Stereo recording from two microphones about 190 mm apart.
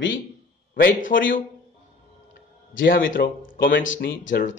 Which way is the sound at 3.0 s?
85° left.